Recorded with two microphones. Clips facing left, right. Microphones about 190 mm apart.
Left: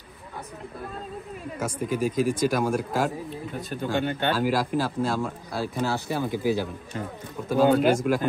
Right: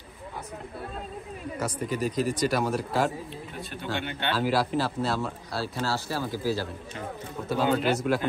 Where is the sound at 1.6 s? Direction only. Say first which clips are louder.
Left 3 dB; 10° left (ahead or behind).